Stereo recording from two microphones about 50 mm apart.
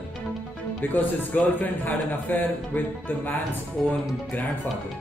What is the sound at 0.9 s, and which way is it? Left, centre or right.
A woman's voice, left.